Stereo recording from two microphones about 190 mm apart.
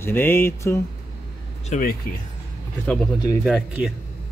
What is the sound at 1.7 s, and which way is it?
Speech, 45° left (ahead or behind).